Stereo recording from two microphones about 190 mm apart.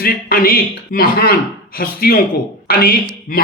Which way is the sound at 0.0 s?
55° left (ahead or behind).